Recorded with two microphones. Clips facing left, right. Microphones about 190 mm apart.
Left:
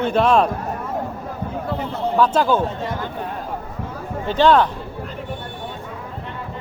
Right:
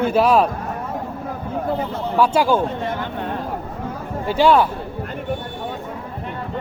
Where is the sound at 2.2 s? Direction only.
10° right (ahead or behind).